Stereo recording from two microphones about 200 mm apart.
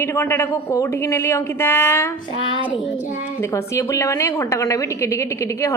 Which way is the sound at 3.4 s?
15° left (ahead or behind).